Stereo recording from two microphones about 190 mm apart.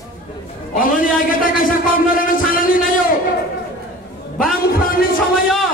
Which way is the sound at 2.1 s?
45° left (ahead or behind).